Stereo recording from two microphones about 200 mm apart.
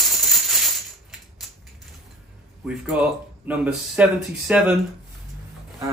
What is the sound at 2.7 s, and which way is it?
Speech, 5° right (ahead or behind).